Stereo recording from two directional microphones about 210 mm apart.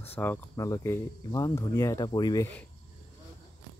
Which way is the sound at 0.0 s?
10° left (ahead or behind).